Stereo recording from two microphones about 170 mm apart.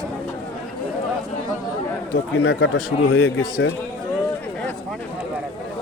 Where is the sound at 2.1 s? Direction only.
90° left.